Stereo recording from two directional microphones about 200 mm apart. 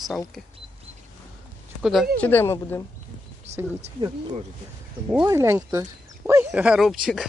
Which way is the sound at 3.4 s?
35° right (ahead or behind).